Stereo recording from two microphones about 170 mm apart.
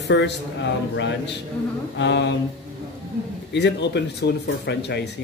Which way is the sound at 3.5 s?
90° left.